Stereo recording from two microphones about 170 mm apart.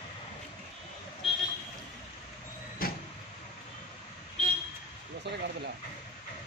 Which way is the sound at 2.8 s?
60° left (ahead or behind).